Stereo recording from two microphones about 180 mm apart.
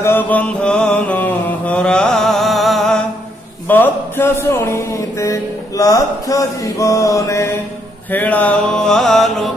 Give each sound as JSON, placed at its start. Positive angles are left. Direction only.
{"t": 0.0, "sound": "mantra", "side_deg": 10}
{"t": 3.6, "sound": "a man's voice", "side_deg": 10}
{"t": 8.1, "sound": "mantra", "side_deg": 10}